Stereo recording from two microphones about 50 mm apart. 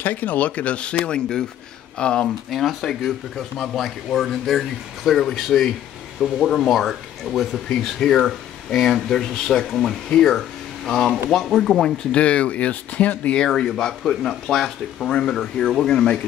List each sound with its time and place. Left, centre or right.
0.0 s speech: left; by 2.2 s centre
2.2 s speech: centre
7.8 s speech: centre
12.1 s speech: left
13.4 s speech: centre